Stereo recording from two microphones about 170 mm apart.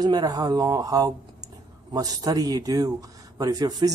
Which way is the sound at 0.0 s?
20° right (ahead or behind).